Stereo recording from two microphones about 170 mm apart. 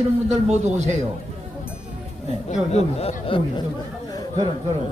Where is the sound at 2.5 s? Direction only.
40° left (ahead or behind).